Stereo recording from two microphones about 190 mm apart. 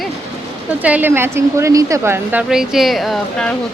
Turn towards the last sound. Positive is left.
turn(degrees=0)  # may be behind; listen again after turning